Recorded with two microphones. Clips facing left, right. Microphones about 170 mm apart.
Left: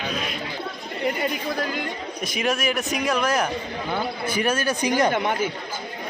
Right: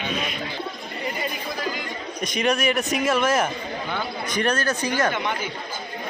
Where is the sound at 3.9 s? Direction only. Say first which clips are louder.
Left 4 dB; 5° left (ahead or behind).